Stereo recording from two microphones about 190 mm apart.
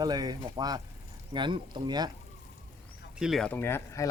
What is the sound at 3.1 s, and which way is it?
Speech, centre (ahead or behind).